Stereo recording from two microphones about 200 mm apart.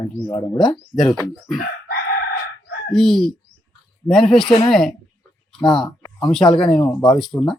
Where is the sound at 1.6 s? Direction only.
50° left (ahead or behind).